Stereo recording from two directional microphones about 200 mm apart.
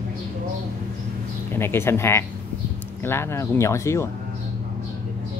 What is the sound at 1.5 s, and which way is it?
A man's voice, 10° left (ahead or behind).